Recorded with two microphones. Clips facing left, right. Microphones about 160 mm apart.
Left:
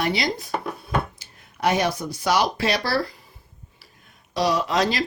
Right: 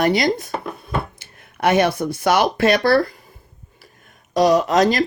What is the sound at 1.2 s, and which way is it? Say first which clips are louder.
Speech: right 4 dB; 60° right (ahead or behind).